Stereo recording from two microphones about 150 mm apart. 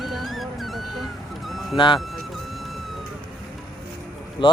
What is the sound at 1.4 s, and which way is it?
Vehicle, centre (ahead or behind).